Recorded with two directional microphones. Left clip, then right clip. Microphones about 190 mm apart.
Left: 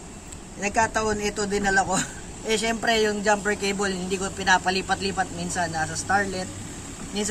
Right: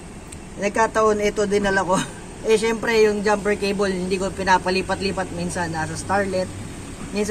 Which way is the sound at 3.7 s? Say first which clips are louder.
Right 4 dB; 5° left (ahead or behind).